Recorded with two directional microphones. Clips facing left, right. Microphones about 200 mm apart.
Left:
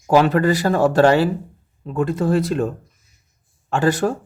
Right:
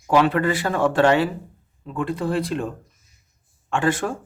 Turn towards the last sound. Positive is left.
turn(degrees=40)  # may be behind; listen again after turning